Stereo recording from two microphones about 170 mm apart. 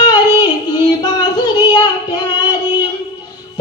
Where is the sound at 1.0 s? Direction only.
25° left (ahead or behind).